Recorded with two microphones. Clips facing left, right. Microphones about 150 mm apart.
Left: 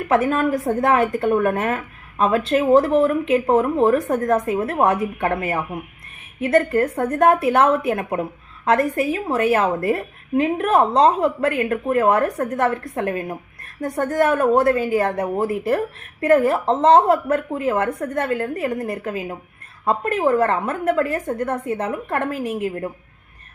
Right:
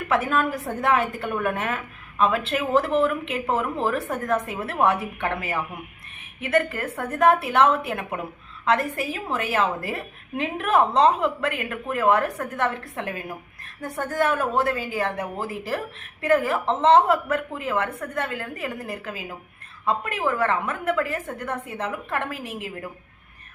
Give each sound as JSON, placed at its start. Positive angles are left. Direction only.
{"t": 0.1, "sound": "a woman's voice", "side_deg": 45}
{"t": 15.4, "sound": "a woman's voice", "side_deg": 55}